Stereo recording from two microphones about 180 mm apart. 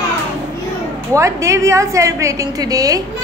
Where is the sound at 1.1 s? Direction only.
15° right (ahead or behind).